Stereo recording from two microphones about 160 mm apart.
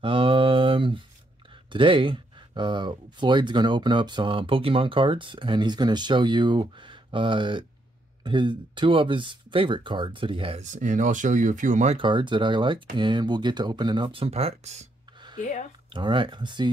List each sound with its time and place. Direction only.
0.0 s mantra: 35° right (ahead or behind)
1.7 s speech: 30° right (ahead or behind)
10.6 s speech: 50° right (ahead or behind)
12.0 s speech: 30° right (ahead or behind); by 14.9 s 45° right (ahead or behind)
15.3 s speech: 50° left (ahead or behind)
15.9 s speech: 30° right (ahead or behind)